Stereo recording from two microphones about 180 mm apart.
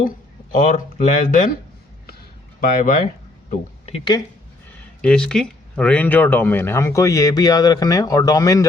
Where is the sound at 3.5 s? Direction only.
35° left (ahead or behind).